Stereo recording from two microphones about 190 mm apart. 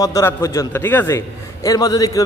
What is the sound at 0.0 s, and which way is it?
A man's voice, 15° left (ahead or behind).